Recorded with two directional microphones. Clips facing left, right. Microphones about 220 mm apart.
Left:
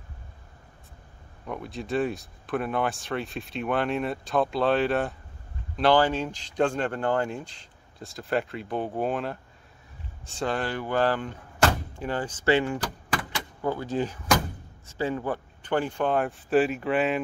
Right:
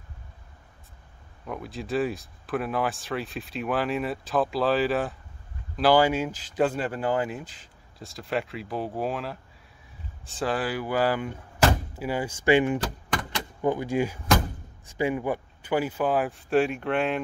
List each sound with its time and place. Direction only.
1.5 s speech: centre (ahead or behind)